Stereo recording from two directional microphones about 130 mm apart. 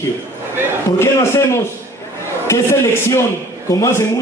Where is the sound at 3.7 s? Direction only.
20° left (ahead or behind).